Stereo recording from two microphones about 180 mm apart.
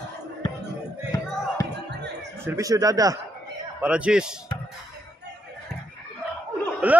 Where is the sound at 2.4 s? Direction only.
20° right (ahead or behind).